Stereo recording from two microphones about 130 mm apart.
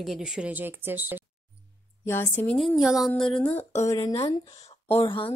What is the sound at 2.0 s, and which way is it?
Speech, 15° left (ahead or behind).